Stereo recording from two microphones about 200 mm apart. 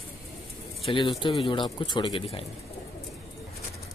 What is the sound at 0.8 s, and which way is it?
Speech, 25° left (ahead or behind).